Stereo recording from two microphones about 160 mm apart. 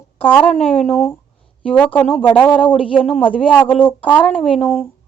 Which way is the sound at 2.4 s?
30° left (ahead or behind).